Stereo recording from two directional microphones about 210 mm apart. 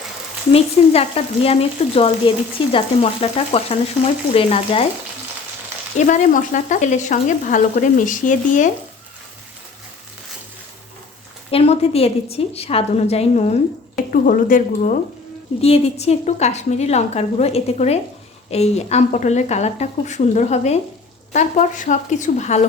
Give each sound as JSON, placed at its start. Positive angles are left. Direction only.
{"t": 0.5, "sound": "frying", "side_deg": 30}
{"t": 6.1, "sound": "frying", "side_deg": 35}
{"t": 11.5, "sound": "frying", "side_deg": 30}